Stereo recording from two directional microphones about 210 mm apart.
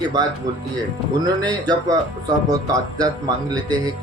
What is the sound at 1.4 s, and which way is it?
Speech, 20° right (ahead or behind).